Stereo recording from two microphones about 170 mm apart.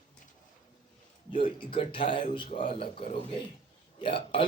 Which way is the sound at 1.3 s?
30° left (ahead or behind).